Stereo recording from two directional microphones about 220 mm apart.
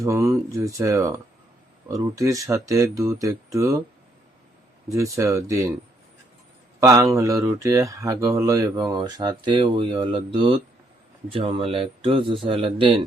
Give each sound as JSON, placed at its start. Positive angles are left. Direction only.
{"t": 0.0, "sound": "speech", "side_deg": -15}
{"t": 4.9, "sound": "speech", "side_deg": -15}
{"t": 6.7, "sound": "speech", "side_deg": -15}